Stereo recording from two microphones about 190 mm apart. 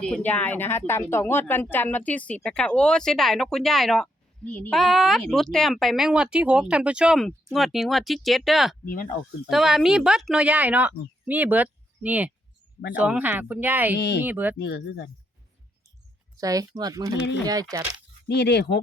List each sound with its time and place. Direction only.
0.0 s a woman's voice: 5° left (ahead or behind); by 14.5 s 10° right (ahead or behind)
14.6 s speech: 65° left (ahead or behind)
16.4 s speech: 20° right (ahead or behind)
18.3 s speech: 65° left (ahead or behind)